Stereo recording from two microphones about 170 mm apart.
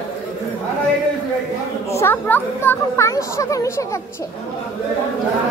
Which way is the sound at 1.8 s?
15° left (ahead or behind).